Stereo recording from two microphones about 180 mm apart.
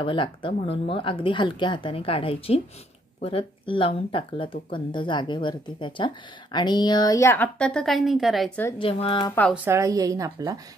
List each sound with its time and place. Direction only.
0.0 s speech: 30° left (ahead or behind); by 8.7 s 5° left (ahead or behind)
8.7 s speech: 30° left (ahead or behind)
9.7 s speech: 15° right (ahead or behind)